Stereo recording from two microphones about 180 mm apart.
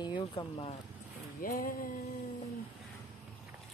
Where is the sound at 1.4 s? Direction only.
50° left (ahead or behind).